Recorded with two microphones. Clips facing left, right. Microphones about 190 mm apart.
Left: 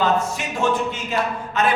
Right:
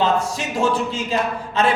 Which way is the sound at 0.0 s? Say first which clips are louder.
Right 1 dB; 30° right (ahead or behind).